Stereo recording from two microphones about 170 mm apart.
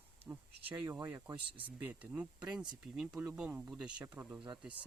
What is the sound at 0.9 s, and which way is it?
Speech, 10° right (ahead or behind).